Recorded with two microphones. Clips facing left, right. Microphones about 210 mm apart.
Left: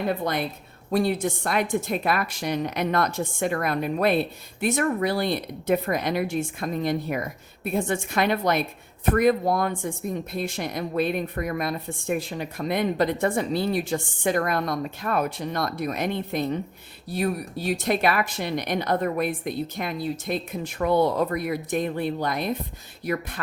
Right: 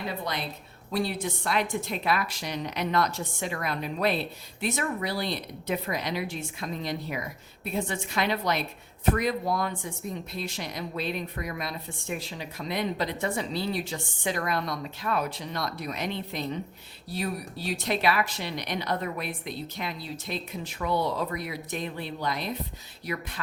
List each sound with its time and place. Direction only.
0.1 s a woman's voice: 50° left (ahead or behind)